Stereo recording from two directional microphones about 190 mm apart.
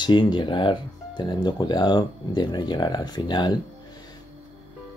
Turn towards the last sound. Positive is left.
turn(degrees=25)  # may be behind; listen again after turning